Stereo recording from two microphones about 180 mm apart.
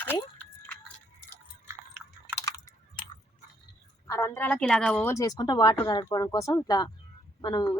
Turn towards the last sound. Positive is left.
turn(degrees=25)  # may be behind; listen again after turning